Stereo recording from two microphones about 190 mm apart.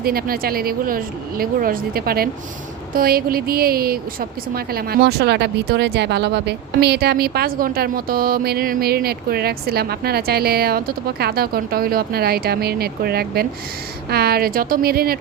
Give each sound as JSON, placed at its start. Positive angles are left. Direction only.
{"t": 0.0, "sound": "speech", "side_deg": -50}